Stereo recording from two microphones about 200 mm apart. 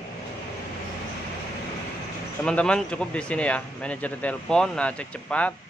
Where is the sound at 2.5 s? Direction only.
5° left (ahead or behind).